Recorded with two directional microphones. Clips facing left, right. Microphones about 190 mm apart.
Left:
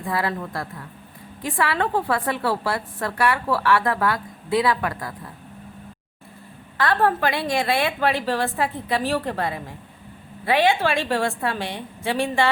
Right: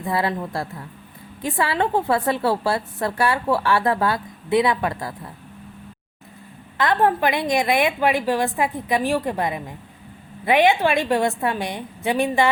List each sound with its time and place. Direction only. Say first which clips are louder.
0.0 s a woman's voice: right 2 dB; 25° right (ahead or behind)
6.7 s a woman's voice: right 1 dB; 20° right (ahead or behind)